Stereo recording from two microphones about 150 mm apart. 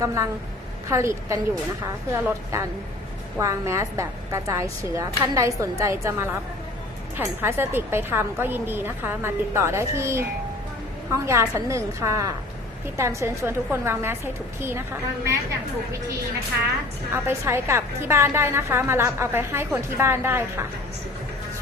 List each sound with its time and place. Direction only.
0.0 s a woman's voice: 20° right (ahead or behind)
7.4 s a woman's voice: 15° right (ahead or behind)
17.1 s a woman's voice: 15° right (ahead or behind)